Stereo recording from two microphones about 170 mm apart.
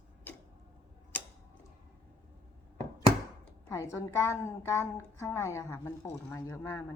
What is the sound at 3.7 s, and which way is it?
A woman's voice, 20° left (ahead or behind).